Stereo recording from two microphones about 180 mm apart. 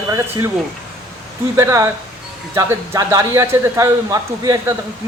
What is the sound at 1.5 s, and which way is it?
A man's voice, 15° right (ahead or behind).